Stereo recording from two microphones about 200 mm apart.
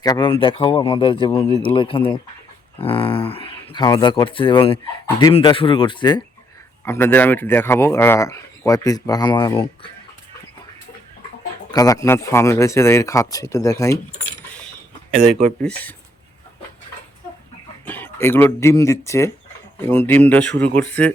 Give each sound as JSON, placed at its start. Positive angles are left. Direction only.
{"t": 0.0, "sound": "speech", "side_deg": 20}
{"t": 6.8, "sound": "speech", "side_deg": 10}
{"t": 11.7, "sound": "speech", "side_deg": 15}
{"t": 15.6, "sound": "speech", "side_deg": 10}
{"t": 17.8, "sound": "speech", "side_deg": 10}